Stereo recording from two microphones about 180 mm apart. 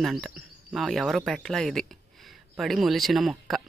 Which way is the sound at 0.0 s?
Centre (ahead or behind).